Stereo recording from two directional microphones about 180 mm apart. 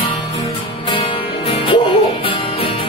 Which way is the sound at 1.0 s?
30° left (ahead or behind).